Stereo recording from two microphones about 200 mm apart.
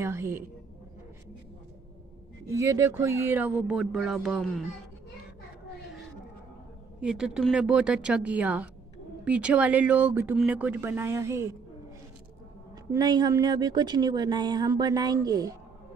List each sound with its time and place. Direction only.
0.0 s speech: 15° right (ahead or behind)
2.5 s speech: 15° right (ahead or behind)
7.0 s speech: 5° right (ahead or behind)
12.9 s a woman's voice: 20° right (ahead or behind)